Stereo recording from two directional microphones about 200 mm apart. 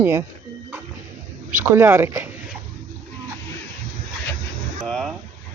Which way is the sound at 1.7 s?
10° right (ahead or behind).